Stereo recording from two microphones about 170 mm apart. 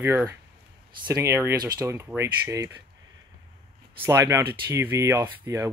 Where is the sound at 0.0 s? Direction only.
15° right (ahead or behind).